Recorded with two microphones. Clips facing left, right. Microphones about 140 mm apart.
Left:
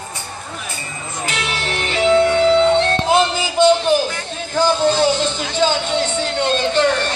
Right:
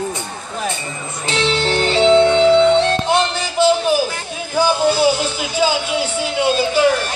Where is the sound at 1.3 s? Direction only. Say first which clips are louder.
Right 8 dB; 30° right (ahead or behind).